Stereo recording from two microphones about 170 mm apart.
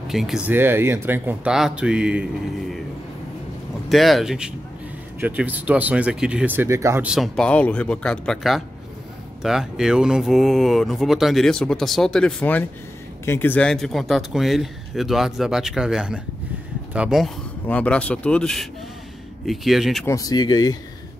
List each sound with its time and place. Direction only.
0.1 s speech: centre (ahead or behind)
0.5 s speech: 10° right (ahead or behind)
3.9 s speech: centre (ahead or behind)
17.6 s a man's voice: 10° left (ahead or behind)
20.1 s speech: 20° left (ahead or behind)